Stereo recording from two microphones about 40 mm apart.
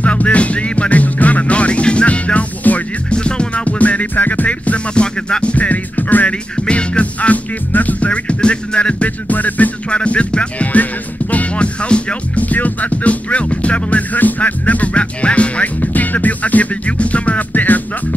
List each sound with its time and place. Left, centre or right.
0.0 s music: left
2.6 s music: left
3.1 s music: left
6.5 s music: left
8.1 s music: left
9.3 s music: left
9.8 s music: left
15.8 s music: left
17.5 s music: left